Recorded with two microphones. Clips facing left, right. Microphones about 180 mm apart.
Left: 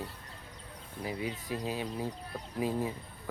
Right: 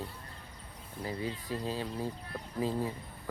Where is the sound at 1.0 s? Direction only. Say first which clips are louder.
Even; 10° left (ahead or behind).